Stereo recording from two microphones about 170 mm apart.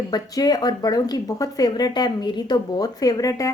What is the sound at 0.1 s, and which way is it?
A woman's voice, 25° left (ahead or behind).